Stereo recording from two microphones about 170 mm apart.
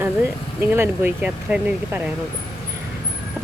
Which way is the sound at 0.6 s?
10° right (ahead or behind).